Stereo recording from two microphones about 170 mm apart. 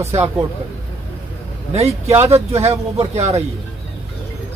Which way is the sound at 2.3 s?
40° right (ahead or behind).